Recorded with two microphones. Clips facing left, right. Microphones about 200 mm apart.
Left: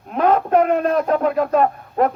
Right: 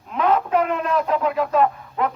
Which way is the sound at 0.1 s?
45° left (ahead or behind).